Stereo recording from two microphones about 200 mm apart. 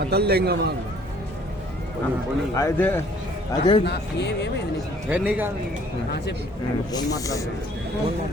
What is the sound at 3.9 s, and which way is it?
Speech, 60° left (ahead or behind).